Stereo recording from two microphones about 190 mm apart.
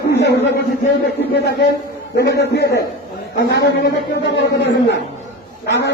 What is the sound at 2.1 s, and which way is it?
A man's voice, 60° left (ahead or behind).